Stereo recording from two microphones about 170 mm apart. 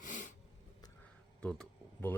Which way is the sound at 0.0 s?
50° left (ahead or behind).